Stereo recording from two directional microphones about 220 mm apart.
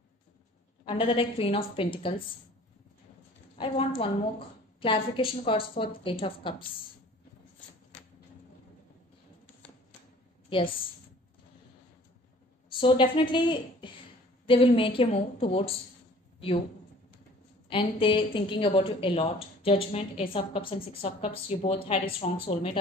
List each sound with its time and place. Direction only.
0.8 s a woman's voice: 25° left (ahead or behind)
3.5 s a woman's voice: 25° left (ahead or behind)
12.8 s a woman's voice: 25° left (ahead or behind)
17.6 s a woman's voice: 25° left (ahead or behind)